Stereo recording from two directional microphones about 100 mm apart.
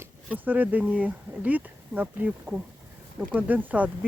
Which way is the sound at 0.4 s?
15° right (ahead or behind).